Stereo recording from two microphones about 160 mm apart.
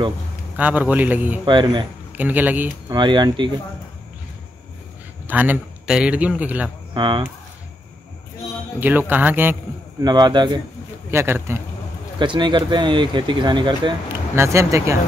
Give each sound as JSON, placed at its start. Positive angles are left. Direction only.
{"t": 0.6, "sound": "speech", "side_deg": -10}
{"t": 1.4, "sound": "speech", "side_deg": -30}
{"t": 2.1, "sound": "speech", "side_deg": -10}
{"t": 2.9, "sound": "speech", "side_deg": -30}
{"t": 5.2, "sound": "a man's voice", "side_deg": -10}
{"t": 6.9, "sound": "speech", "side_deg": -30}
{"t": 8.7, "sound": "speech", "side_deg": -10}
{"t": 10.0, "sound": "speech", "side_deg": -25}
{"t": 11.1, "sound": "speech", "side_deg": -15}
{"t": 12.2, "sound": "speech", "side_deg": -30}
{"t": 14.3, "sound": "speech", "side_deg": -15}